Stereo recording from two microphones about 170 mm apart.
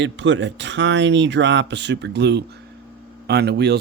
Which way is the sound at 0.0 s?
90° right.